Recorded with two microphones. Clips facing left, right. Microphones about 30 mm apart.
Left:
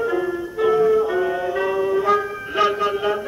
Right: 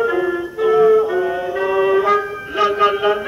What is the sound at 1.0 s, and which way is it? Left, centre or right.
Music, centre.